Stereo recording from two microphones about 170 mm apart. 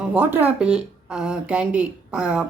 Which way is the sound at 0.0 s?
10° right (ahead or behind).